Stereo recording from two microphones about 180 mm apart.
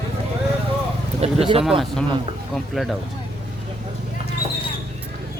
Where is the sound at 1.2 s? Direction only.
35° right (ahead or behind).